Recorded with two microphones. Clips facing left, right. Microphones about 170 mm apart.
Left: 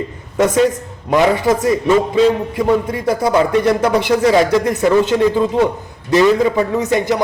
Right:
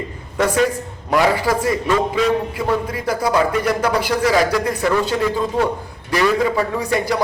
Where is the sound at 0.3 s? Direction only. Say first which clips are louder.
Left 4 dB; 20° left (ahead or behind).